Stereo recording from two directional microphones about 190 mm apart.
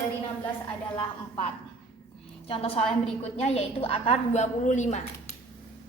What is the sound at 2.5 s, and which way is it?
A woman's voice, 30° left (ahead or behind).